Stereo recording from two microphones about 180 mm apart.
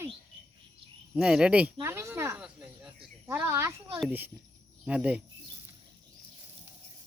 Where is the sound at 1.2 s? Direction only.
5° right (ahead or behind).